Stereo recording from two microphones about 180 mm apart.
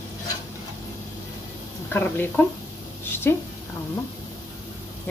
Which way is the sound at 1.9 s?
10° left (ahead or behind).